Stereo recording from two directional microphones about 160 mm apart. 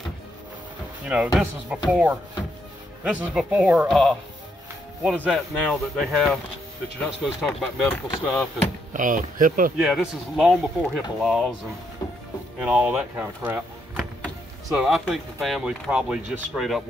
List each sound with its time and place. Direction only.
1.0 s speech: 5° right (ahead or behind)
8.9 s speech: 55° right (ahead or behind)
9.8 s speech: centre (ahead or behind)
12.6 s speech: 10° right (ahead or behind)